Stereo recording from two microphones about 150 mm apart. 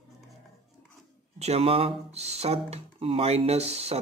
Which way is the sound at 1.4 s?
45° right (ahead or behind).